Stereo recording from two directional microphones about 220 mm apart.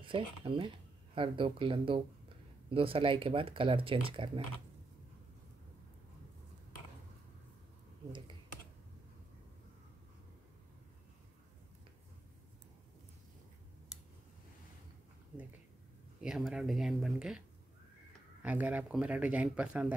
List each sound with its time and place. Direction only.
0.0 s speech: 25° right (ahead or behind)
16.2 s speech: centre (ahead or behind)
18.4 s speech: 5° right (ahead or behind)